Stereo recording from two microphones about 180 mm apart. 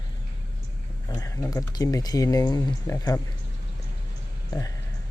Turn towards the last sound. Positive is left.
turn(degrees=20)  # may be behind; listen again after turning